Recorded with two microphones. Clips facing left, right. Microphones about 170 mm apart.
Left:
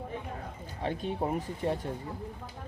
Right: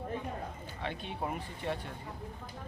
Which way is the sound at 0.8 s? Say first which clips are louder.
Left 6 dB; 40° left (ahead or behind).